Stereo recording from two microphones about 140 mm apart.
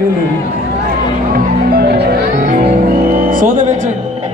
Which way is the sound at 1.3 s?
90° right.